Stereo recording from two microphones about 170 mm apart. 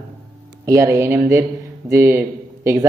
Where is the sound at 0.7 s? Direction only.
15° right (ahead or behind).